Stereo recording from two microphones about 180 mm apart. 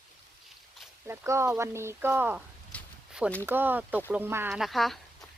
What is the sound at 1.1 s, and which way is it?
Speech, 15° right (ahead or behind).